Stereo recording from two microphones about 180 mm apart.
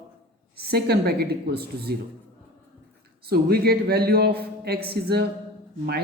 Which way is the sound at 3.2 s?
60° right (ahead or behind).